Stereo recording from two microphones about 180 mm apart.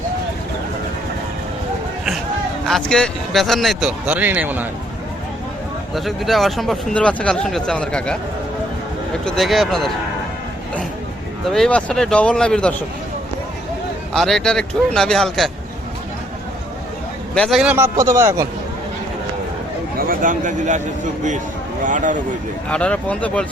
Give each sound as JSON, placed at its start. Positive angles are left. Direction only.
{"t": 2.6, "sound": "speech", "side_deg": 5}
{"t": 5.9, "sound": "speech", "side_deg": 0}
{"t": 9.2, "sound": "speech", "side_deg": 0}
{"t": 11.4, "sound": "speech", "side_deg": 5}
{"t": 14.1, "sound": "speech", "side_deg": 0}
{"t": 17.3, "sound": "a man's voice", "side_deg": 0}
{"t": 20.0, "sound": "speech", "side_deg": -50}
{"t": 22.7, "sound": "speech", "side_deg": 5}